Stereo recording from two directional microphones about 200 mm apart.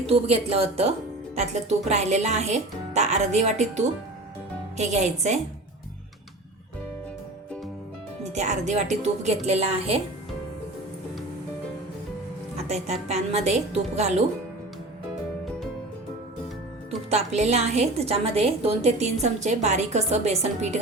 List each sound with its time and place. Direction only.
0.0 s a woman's voice: 30° right (ahead or behind)
8.2 s a woman's voice: 35° right (ahead or behind)
12.6 s a woman's voice: 35° right (ahead or behind)
17.1 s a woman's voice: 35° right (ahead or behind)